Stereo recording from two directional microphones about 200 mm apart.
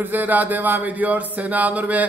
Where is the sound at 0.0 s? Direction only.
10° right (ahead or behind).